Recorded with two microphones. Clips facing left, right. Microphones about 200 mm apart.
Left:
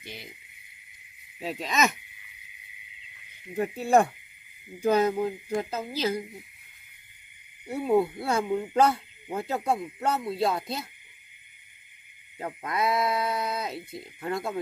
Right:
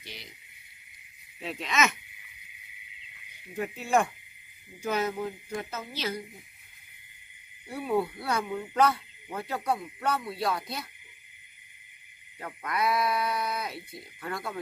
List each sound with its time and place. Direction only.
0.0 s speech: 50° left (ahead or behind)
1.4 s speech: 40° left (ahead or behind)
3.5 s speech: 35° left (ahead or behind)
7.6 s speech: 25° left (ahead or behind)
12.4 s speech: 25° left (ahead or behind)